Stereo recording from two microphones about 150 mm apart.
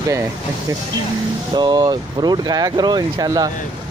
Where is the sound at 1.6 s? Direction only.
25° right (ahead or behind).